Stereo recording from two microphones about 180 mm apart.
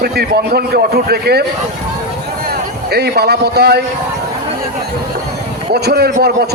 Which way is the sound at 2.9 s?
65° right (ahead or behind).